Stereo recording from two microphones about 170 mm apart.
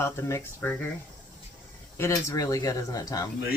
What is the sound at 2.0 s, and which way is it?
Speech, 15° left (ahead or behind).